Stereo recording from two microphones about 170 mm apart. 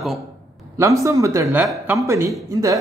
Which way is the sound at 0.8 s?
15° right (ahead or behind).